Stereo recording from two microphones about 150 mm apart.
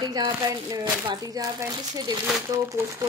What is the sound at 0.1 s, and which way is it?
Speech, 25° right (ahead or behind).